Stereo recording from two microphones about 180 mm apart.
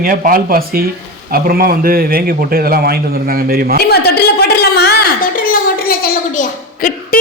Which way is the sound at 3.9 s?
65° left (ahead or behind).